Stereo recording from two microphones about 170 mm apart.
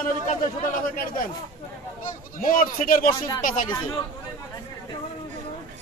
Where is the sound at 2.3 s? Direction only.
55° left (ahead or behind).